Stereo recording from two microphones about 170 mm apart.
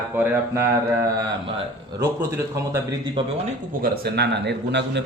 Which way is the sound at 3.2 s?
30° right (ahead or behind).